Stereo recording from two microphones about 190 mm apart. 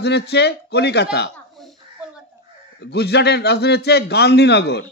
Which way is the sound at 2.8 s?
60° left (ahead or behind).